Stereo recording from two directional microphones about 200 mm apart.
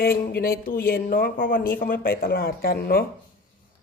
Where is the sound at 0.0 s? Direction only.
50° left (ahead or behind).